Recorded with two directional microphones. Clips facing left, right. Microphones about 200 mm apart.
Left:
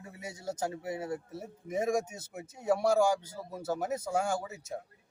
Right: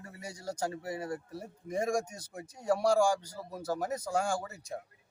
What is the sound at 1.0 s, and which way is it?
Speech, 5° left (ahead or behind).